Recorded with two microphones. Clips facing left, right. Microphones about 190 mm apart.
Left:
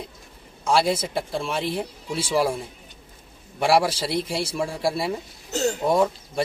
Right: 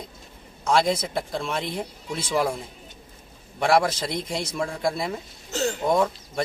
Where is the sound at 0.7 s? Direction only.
10° left (ahead or behind).